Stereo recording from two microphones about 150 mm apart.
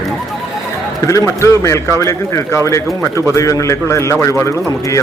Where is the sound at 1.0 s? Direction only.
20° left (ahead or behind).